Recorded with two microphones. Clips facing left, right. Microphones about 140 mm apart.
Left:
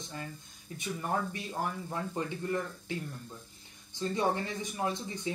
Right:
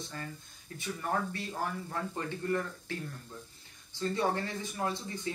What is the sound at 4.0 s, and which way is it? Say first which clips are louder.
Speech: left 1 dB; 15° left (ahead or behind).